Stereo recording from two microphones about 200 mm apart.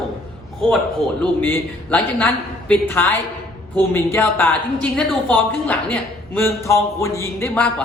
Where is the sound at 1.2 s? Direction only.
10° left (ahead or behind).